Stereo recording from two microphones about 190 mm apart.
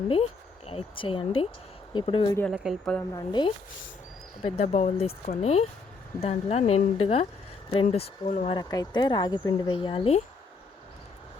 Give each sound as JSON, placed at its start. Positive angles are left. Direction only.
{"t": 0.1, "sound": "speech", "side_deg": 30}
{"t": 2.5, "sound": "a woman's voice", "side_deg": 0}
{"t": 3.2, "sound": "speech", "side_deg": 20}
{"t": 4.4, "sound": "speech", "side_deg": 35}
{"t": 8.5, "sound": "speech", "side_deg": 20}